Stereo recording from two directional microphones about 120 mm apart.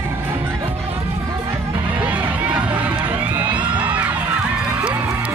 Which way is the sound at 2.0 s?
10° right (ahead or behind).